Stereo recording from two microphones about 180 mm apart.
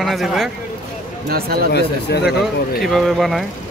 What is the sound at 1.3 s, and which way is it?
Speech, 60° right (ahead or behind).